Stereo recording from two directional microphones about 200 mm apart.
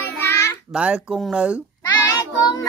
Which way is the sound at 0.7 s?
5° right (ahead or behind).